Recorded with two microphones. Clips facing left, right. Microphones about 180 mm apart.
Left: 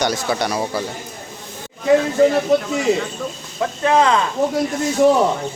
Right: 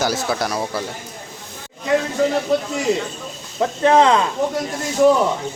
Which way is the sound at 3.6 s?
30° right (ahead or behind).